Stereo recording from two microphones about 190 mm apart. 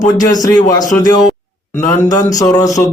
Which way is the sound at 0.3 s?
20° left (ahead or behind).